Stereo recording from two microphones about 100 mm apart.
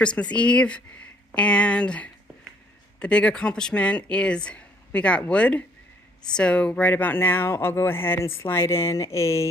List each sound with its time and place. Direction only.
0.0 s speech: 10° left (ahead or behind); by 9.5 s 30° left (ahead or behind)